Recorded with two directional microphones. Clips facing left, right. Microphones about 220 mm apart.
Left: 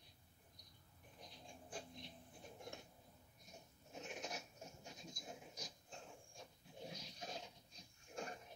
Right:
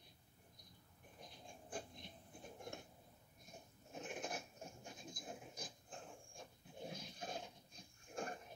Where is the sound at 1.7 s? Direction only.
50° right (ahead or behind).